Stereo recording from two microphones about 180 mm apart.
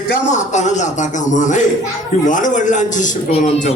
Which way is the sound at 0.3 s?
40° left (ahead or behind).